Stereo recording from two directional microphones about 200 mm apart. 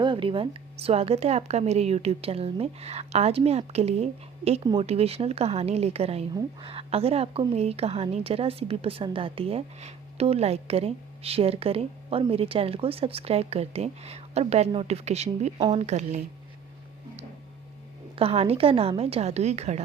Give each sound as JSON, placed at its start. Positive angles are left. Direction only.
{"t": 0.0, "sound": "a woman's voice", "side_deg": -25}
{"t": 18.2, "sound": "a woman's voice", "side_deg": -30}